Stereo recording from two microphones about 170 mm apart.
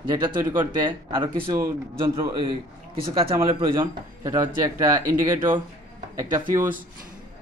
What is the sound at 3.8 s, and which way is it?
A man's voice, 20° right (ahead or behind).